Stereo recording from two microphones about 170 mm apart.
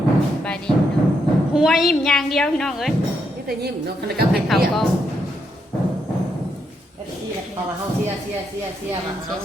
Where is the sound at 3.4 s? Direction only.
70° right (ahead or behind).